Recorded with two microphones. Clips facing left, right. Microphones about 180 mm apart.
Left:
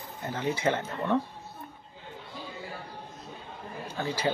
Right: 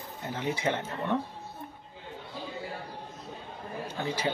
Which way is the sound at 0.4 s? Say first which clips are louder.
Left 2 dB; 15° right (ahead or behind).